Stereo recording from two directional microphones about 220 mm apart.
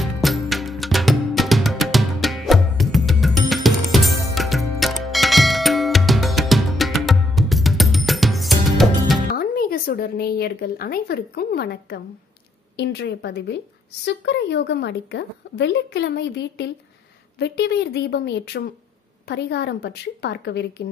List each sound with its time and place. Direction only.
0.0 s music: centre (ahead or behind)
9.4 s a woman's voice: 40° left (ahead or behind)